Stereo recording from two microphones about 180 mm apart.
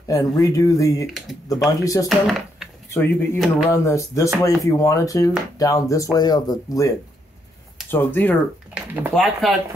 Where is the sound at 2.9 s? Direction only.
15° left (ahead or behind).